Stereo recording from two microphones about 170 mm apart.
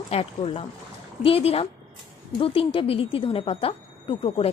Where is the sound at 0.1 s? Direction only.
35° left (ahead or behind).